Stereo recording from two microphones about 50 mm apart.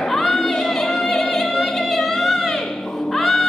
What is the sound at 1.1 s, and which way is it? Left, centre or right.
Music, centre.